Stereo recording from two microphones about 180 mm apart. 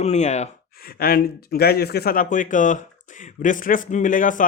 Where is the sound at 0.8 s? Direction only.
55° left (ahead or behind).